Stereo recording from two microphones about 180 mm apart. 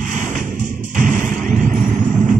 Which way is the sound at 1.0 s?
45° right (ahead or behind).